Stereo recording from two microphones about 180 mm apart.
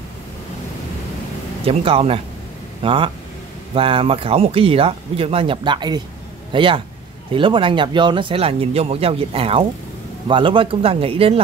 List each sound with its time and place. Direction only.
1.7 s speech: 35° right (ahead or behind)